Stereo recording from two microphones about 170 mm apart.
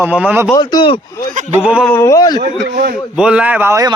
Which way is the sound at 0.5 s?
25° left (ahead or behind).